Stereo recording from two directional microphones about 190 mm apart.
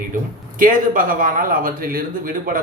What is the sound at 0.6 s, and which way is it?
Speech, 45° right (ahead or behind).